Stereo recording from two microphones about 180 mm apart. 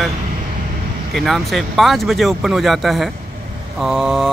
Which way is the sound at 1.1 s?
Centre (ahead or behind).